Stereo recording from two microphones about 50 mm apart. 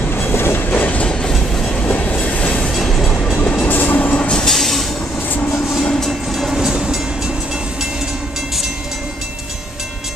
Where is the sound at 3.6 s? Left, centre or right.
Left.